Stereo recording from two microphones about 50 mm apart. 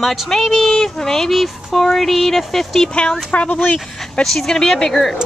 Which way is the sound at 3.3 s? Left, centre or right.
Left.